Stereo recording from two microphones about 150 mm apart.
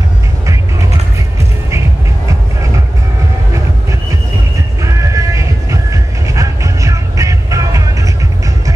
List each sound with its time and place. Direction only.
4.8 s train: 20° right (ahead or behind)